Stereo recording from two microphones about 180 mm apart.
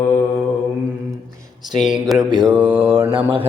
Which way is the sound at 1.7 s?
Centre (ahead or behind).